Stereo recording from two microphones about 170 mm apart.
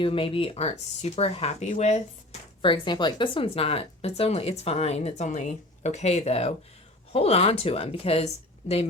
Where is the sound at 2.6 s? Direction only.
30° left (ahead or behind).